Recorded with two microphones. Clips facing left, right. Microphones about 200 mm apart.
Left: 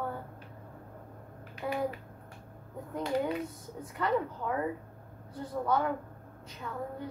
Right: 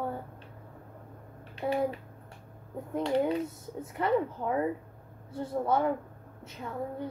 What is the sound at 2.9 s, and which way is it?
Speech, 25° right (ahead or behind).